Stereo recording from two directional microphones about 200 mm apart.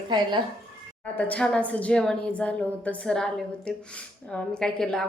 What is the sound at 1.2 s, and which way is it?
A woman's voice, 5° left (ahead or behind).